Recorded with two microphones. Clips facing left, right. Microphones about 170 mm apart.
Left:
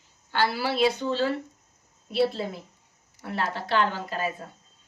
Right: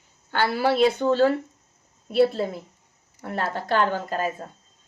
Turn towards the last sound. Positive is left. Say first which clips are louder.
# right 3 dB
turn(degrees=-45)  # may be behind; listen again after turning